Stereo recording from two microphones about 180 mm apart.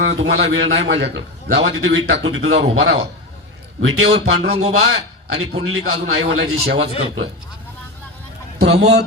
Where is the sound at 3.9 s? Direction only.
35° right (ahead or behind).